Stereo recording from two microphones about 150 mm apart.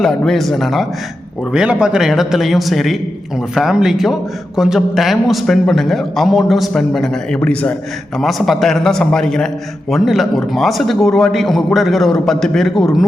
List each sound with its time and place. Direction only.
0.0 s a man's voice: 5° left (ahead or behind)